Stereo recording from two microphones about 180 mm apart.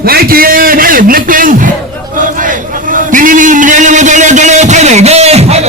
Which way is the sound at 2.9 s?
50° right (ahead or behind).